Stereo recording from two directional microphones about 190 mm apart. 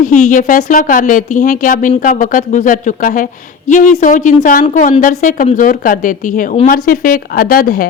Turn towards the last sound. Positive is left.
turn(degrees=50)  # may be behind; listen again after turning